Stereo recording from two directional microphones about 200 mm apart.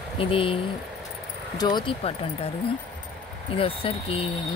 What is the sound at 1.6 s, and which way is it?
Speech, 20° left (ahead or behind).